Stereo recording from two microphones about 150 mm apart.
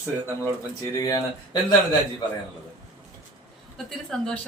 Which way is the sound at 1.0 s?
25° left (ahead or behind).